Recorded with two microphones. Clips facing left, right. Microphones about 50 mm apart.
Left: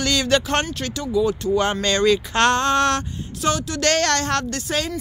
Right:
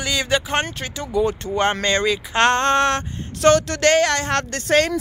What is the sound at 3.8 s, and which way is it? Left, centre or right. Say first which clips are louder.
Speech: even; centre.